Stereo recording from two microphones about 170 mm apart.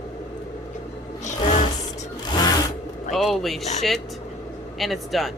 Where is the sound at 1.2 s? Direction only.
45° left (ahead or behind).